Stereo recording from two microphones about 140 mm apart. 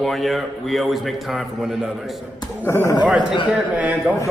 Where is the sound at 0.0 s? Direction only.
Centre (ahead or behind).